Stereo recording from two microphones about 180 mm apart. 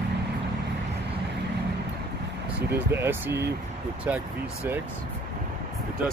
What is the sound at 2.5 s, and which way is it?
Speech, 10° right (ahead or behind).